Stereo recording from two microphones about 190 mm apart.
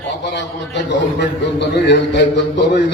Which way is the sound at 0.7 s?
65° left (ahead or behind).